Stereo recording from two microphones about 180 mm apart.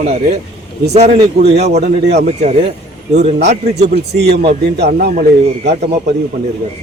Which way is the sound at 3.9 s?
65° right (ahead or behind).